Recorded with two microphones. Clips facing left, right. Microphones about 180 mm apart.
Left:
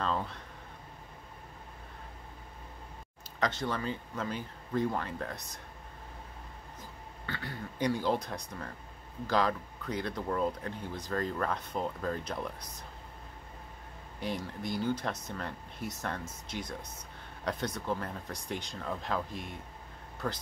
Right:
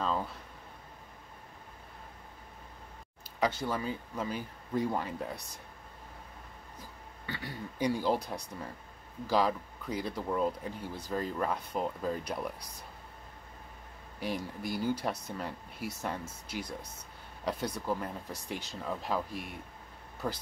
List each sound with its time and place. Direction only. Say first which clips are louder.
0.0 s a sound: even; 5° right (ahead or behind)
3.3 s speech: right 1 dB; 10° right (ahead or behind)
7.2 s speech: even; 15° right (ahead or behind)
14.2 s speech: even; 10° right (ahead or behind)